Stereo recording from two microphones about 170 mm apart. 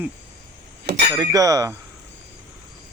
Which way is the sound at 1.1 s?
20° right (ahead or behind).